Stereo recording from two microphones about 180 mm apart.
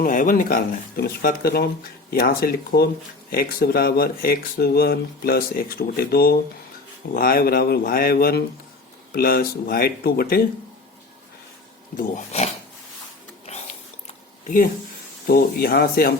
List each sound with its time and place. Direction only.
0.0 s speech: 50° left (ahead or behind)
11.9 s speech: 40° left (ahead or behind)
13.5 s a sound: 35° left (ahead or behind)
15.3 s speech: 55° left (ahead or behind)